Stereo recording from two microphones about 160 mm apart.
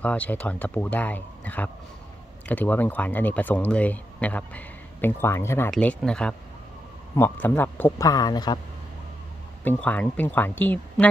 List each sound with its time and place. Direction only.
0.0 s speech: 10° left (ahead or behind)
8.1 s speech: 25° left (ahead or behind)
9.7 s speech: 10° left (ahead or behind)